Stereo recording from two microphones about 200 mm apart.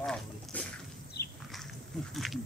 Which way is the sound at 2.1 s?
Centre (ahead or behind).